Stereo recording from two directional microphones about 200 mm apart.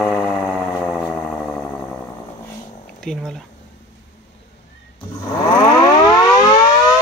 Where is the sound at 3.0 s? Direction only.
5° left (ahead or behind).